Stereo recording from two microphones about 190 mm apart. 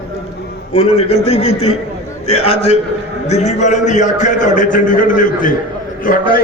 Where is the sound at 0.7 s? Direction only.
30° left (ahead or behind).